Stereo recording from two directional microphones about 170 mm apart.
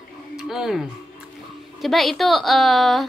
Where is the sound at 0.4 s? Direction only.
Centre (ahead or behind).